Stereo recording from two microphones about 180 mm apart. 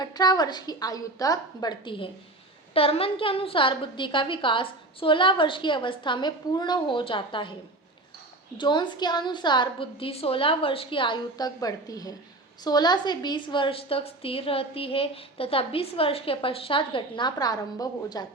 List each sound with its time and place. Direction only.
0.0 s a woman's voice: 20° left (ahead or behind)
8.5 s a woman's voice: 25° left (ahead or behind)